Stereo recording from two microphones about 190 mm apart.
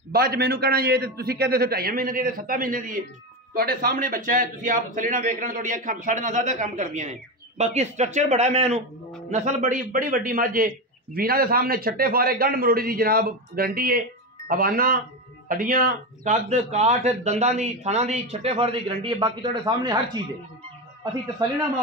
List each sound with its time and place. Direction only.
0.1 s a man's voice: 55° right (ahead or behind); by 20.2 s 20° right (ahead or behind)